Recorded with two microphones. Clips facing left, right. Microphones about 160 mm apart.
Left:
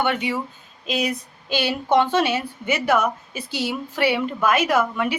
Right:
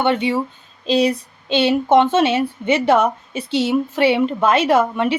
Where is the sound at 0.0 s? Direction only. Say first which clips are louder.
Right 5 dB; 25° right (ahead or behind).